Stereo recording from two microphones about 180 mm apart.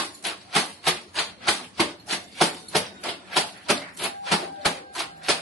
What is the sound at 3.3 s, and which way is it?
Typewriter, centre (ahead or behind).